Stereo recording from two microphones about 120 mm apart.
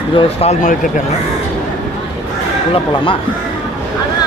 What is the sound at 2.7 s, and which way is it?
Speech, 45° left (ahead or behind).